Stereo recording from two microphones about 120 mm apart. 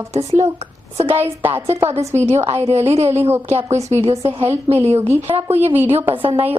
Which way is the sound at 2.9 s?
60° right (ahead or behind).